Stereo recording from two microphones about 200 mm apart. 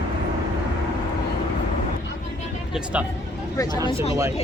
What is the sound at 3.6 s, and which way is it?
Speech, 15° left (ahead or behind).